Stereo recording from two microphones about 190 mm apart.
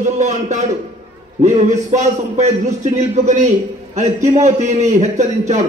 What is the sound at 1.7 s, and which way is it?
A man's voice, 40° right (ahead or behind).